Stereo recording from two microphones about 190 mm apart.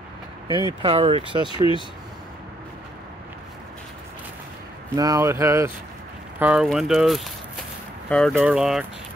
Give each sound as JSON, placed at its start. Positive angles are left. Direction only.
{"t": 0.8, "sound": "speech", "side_deg": -30}
{"t": 1.5, "sound": "speech", "side_deg": 25}
{"t": 4.9, "sound": "speech", "side_deg": -20}
{"t": 6.4, "sound": "speech", "side_deg": -5}